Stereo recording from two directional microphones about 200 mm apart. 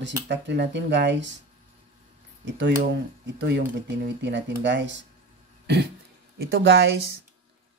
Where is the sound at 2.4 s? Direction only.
60° right (ahead or behind).